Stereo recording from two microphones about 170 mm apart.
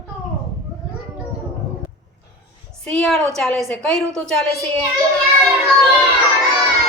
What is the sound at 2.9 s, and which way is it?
A woman's voice, 5° left (ahead or behind).